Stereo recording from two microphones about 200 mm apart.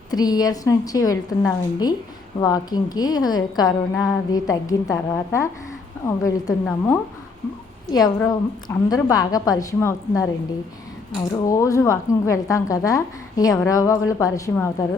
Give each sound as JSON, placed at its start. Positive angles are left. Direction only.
{"t": 0.1, "sound": "a woman's voice", "side_deg": 20}
{"t": 11.4, "sound": "a woman's voice", "side_deg": 15}